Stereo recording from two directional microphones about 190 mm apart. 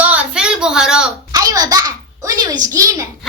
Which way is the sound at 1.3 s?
20° right (ahead or behind).